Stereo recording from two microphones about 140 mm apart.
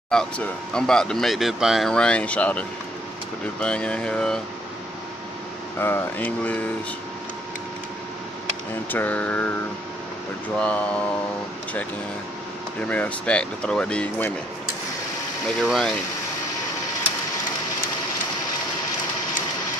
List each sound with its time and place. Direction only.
0.1 s speech: 5° left (ahead or behind)
5.8 s speech: 15° left (ahead or behind)
8.9 s speech: 10° left (ahead or behind)
10.6 s speech: 10° left (ahead or behind)
12.8 s speech: 10° left (ahead or behind)
15.6 s speech: centre (ahead or behind)